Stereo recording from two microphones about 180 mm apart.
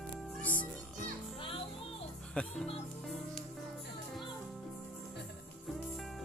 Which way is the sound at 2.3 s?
5° left (ahead or behind).